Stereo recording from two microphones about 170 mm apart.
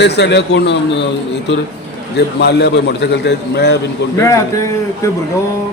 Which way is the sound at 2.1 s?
80° left.